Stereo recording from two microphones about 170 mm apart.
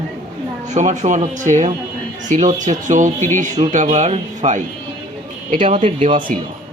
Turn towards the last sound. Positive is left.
turn(degrees=-45)  # may be behind; listen again after turning